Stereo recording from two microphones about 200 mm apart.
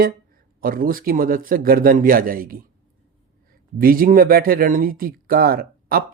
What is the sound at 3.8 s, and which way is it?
Speech, 45° right (ahead or behind).